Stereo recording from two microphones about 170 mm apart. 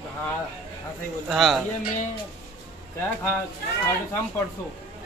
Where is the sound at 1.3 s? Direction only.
Centre (ahead or behind).